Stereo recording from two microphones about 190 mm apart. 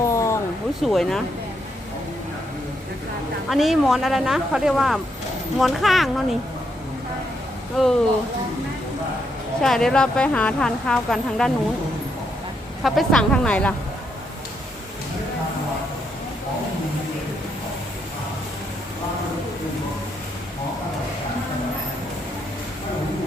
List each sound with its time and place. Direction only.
0.0 s a sound: 15° left (ahead or behind)
0.8 s speech: centre (ahead or behind)
3.5 s speech: centre (ahead or behind)
7.8 s speech: centre (ahead or behind)
9.6 s speech: centre (ahead or behind)
12.8 s speech: centre (ahead or behind)